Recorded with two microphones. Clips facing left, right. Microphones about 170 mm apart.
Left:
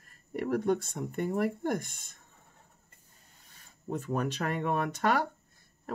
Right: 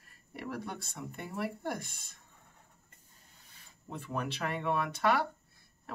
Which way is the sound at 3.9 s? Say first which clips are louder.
Left 6 dB; 45° left (ahead or behind).